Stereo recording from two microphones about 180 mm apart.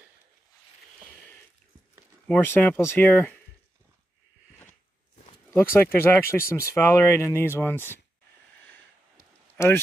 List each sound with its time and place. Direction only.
2.2 s speech: 10° left (ahead or behind)
5.5 s speech: 10° left (ahead or behind)
9.1 s a sound: 15° left (ahead or behind)